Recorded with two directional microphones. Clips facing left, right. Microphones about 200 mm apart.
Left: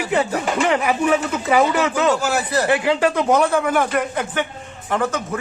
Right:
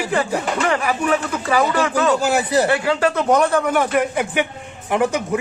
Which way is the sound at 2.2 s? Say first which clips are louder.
Right 3 dB; 15° right (ahead or behind).